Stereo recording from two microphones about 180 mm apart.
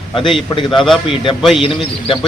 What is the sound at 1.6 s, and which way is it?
Speech, 30° left (ahead or behind).